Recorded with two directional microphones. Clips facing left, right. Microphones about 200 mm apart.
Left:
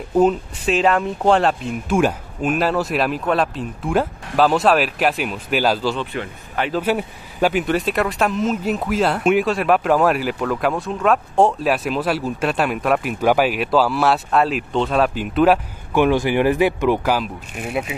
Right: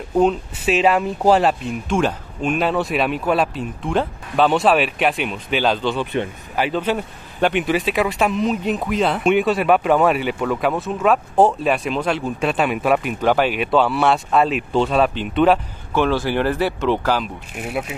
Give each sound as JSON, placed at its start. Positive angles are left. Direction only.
{"t": 0.1, "sound": "speech", "side_deg": 5}
{"t": 17.6, "sound": "speech", "side_deg": 0}